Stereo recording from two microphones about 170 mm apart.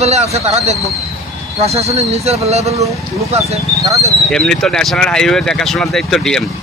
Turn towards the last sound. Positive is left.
turn(degrees=5)  # may be behind; listen again after turning